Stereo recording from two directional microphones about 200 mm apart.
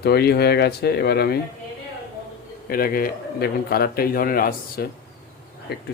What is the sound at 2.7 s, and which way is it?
A man's voice, 45° left (ahead or behind).